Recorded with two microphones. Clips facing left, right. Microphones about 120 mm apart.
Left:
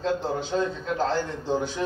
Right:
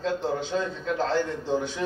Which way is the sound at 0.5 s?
10° left (ahead or behind).